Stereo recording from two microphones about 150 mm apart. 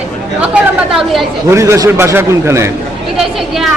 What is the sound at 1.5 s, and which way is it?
A man's voice, 20° right (ahead or behind).